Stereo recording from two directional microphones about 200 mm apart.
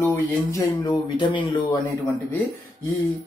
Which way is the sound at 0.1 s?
15° left (ahead or behind).